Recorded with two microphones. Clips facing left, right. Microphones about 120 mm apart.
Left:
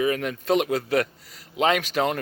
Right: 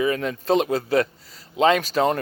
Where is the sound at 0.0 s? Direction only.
30° right (ahead or behind).